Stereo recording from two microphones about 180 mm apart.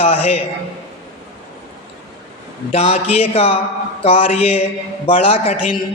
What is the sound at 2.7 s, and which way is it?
A man's voice, 35° left (ahead or behind).